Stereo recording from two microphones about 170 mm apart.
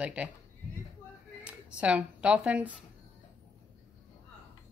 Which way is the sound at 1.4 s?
5° right (ahead or behind).